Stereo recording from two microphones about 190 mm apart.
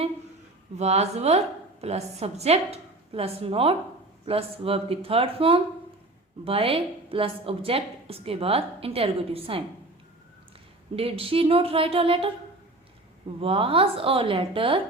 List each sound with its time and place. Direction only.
0.8 s a woman's voice: 35° right (ahead or behind)
10.9 s speech: 30° right (ahead or behind)
13.4 s speech: 30° right (ahead or behind)